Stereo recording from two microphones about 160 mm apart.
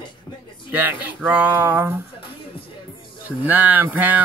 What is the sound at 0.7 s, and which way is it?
Speech, 10° right (ahead or behind).